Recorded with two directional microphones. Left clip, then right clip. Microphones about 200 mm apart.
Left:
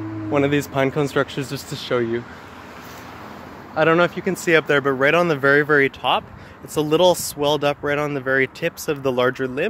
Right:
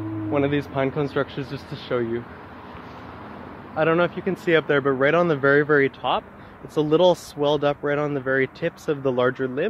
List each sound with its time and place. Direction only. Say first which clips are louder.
0.3 s speech: left 4 dB; 45° left (ahead or behind)
3.7 s speech: left 4 dB; 45° left (ahead or behind)
4.5 s speech: left 3 dB; 20° left (ahead or behind)